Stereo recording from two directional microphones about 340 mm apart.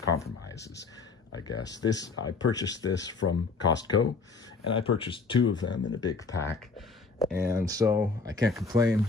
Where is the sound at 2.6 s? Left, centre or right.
Left.